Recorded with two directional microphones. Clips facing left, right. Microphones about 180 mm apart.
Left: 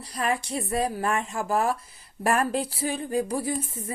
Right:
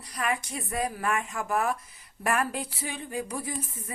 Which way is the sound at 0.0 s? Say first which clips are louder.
Left 3 dB; 30° left (ahead or behind).